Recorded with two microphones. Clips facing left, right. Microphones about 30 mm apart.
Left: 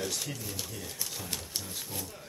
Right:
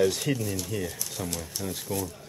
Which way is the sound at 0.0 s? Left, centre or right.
Right.